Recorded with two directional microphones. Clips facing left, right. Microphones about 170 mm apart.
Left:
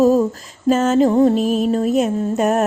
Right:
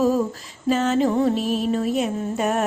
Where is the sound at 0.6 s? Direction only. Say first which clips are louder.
Left 5 dB; 45° left (ahead or behind).